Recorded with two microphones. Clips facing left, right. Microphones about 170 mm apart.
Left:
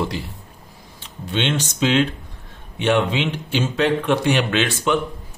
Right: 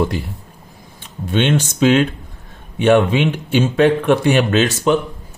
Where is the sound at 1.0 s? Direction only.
50° right (ahead or behind).